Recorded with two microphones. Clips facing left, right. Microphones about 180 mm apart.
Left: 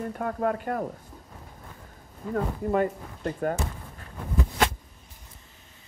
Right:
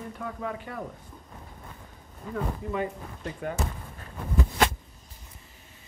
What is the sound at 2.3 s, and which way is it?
Speech, 50° left (ahead or behind).